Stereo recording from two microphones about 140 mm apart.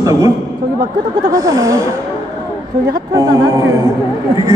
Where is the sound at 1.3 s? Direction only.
25° right (ahead or behind).